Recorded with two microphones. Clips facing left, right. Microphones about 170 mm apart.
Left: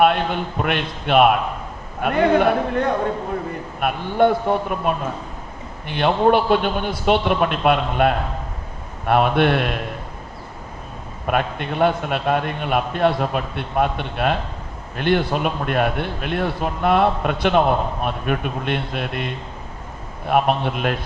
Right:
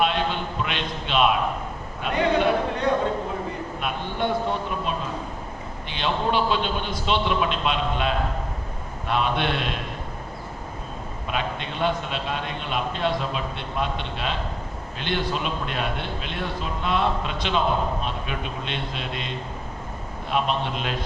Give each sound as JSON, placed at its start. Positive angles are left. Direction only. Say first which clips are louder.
{"t": 0.0, "sound": "a man's voice", "louder": "left 6 dB", "side_deg": 55}
{"t": 11.3, "sound": "a man's voice", "louder": "left 7 dB", "side_deg": 55}